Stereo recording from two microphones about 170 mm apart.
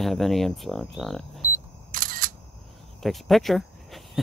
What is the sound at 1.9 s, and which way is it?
Single-lens reflex camera, 55° right (ahead or behind).